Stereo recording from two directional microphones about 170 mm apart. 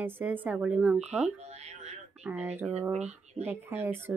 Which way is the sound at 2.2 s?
10° right (ahead or behind).